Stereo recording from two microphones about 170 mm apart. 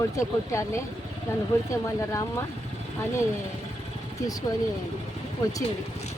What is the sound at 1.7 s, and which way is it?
Speech, 15° left (ahead or behind).